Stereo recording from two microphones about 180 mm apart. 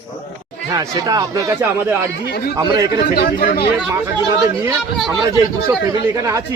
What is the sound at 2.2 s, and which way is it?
Speech, 60° left (ahead or behind).